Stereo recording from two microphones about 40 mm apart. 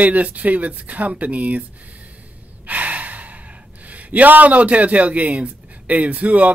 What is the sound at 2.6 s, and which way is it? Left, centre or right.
Gasp, right.